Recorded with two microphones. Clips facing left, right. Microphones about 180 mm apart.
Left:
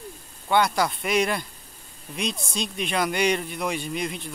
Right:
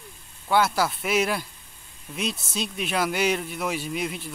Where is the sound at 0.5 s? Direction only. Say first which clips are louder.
Even; 5° right (ahead or behind).